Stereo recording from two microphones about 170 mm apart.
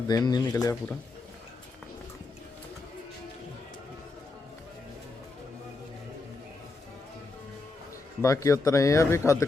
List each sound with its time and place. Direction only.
0.1 s speech: 25° left (ahead or behind)
8.2 s speech: 20° left (ahead or behind)